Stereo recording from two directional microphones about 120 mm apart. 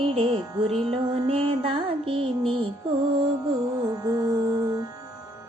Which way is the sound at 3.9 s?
30° right (ahead or behind).